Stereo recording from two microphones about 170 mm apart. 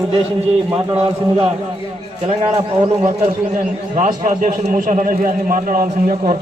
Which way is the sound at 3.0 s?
40° right (ahead or behind).